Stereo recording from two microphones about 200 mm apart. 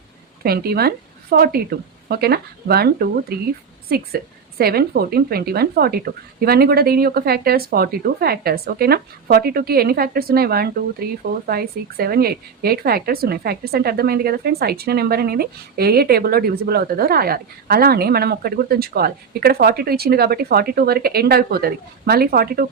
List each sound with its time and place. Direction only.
0.4 s speech: 50° right (ahead or behind)